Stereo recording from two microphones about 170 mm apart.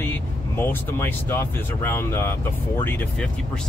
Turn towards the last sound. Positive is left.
turn(degrees=10)  # may be behind; listen again after turning